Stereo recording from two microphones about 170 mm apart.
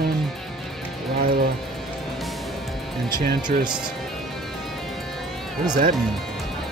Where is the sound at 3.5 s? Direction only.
50° right (ahead or behind).